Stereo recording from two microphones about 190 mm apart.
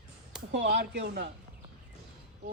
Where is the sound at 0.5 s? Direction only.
65° right (ahead or behind).